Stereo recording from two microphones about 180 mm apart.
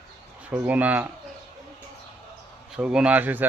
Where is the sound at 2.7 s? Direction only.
5° right (ahead or behind).